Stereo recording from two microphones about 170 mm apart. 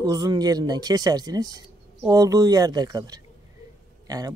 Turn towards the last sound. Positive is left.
turn(degrees=-20)  # may be behind; listen again after turning